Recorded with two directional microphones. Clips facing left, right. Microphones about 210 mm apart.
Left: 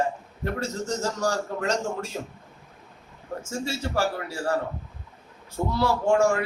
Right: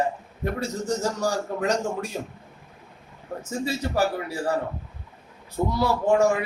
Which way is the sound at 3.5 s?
15° right (ahead or behind).